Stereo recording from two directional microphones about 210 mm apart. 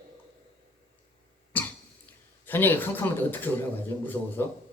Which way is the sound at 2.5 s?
10° left (ahead or behind).